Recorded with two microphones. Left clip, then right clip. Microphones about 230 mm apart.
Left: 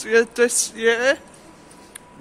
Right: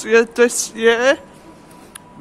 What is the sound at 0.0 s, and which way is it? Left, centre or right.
A man's voice, centre.